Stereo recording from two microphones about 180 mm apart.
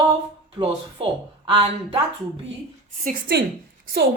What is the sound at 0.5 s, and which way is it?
Speech, 30° right (ahead or behind).